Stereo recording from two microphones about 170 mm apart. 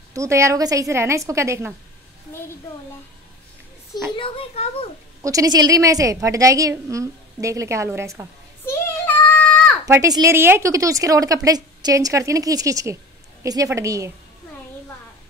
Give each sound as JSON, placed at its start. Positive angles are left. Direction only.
{"t": 0.1, "sound": "a woman's voice", "side_deg": -15}
{"t": 4.2, "sound": "a child's voice", "side_deg": 35}
{"t": 5.2, "sound": "a woman's voice", "side_deg": -20}
{"t": 8.6, "sound": "a sound", "side_deg": 10}
{"t": 9.8, "sound": "a woman's voice", "side_deg": -20}